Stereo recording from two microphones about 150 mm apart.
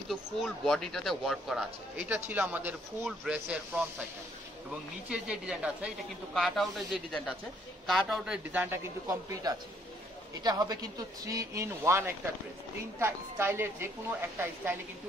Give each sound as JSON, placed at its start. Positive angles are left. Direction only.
{"t": 0.1, "sound": "speech", "side_deg": 0}
{"t": 5.1, "sound": "a man's voice", "side_deg": -5}